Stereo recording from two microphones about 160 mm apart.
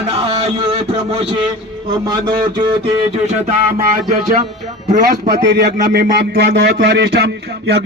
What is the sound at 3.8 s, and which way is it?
Music, 55° right (ahead or behind).